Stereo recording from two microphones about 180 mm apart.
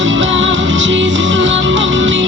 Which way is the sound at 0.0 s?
90° right.